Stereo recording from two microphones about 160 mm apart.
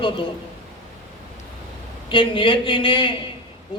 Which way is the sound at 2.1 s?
30° left (ahead or behind).